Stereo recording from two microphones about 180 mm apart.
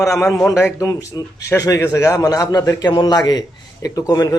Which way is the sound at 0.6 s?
20° left (ahead or behind).